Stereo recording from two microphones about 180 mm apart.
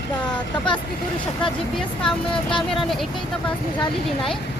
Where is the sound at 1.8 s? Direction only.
5° left (ahead or behind).